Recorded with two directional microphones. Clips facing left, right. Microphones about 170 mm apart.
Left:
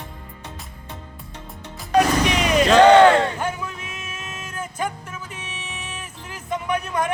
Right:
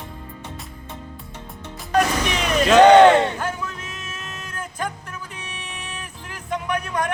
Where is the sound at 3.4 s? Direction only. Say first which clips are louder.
Left 1 dB; 10° left (ahead or behind).